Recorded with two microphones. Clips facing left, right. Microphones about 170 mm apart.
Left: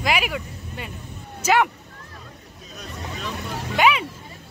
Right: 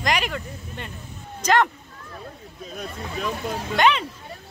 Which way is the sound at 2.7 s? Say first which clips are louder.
Right 3 dB; 50° right (ahead or behind).